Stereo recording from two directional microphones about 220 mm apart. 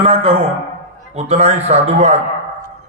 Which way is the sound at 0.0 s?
25° right (ahead or behind).